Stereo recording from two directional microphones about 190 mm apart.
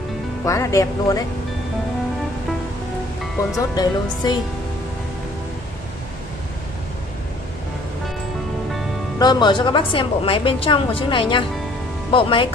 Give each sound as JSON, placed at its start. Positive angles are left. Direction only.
{"t": 0.5, "sound": "speech", "side_deg": 15}
{"t": 3.7, "sound": "a woman's voice", "side_deg": 20}
{"t": 9.2, "sound": "a woman's voice", "side_deg": 25}